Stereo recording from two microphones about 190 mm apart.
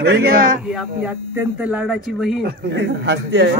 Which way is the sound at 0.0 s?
55° right (ahead or behind).